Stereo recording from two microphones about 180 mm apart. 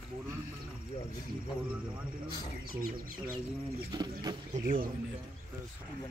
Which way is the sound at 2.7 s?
50° right (ahead or behind).